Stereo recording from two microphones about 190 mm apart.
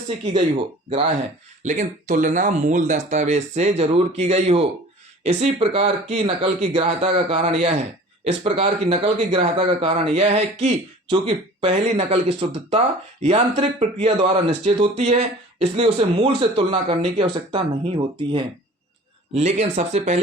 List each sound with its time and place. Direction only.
1.6 s speech: 40° right (ahead or behind)